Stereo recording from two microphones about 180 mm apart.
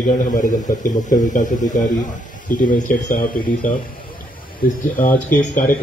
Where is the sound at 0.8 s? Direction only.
45° left (ahead or behind).